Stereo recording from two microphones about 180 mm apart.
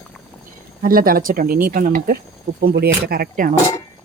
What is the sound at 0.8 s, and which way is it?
Speech, 55° right (ahead or behind).